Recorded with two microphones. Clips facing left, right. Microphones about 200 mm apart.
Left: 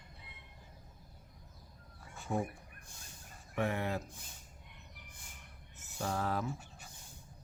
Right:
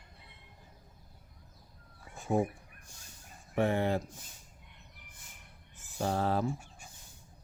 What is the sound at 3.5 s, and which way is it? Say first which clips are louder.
Speech: right 6 dB; 30° right (ahead or behind).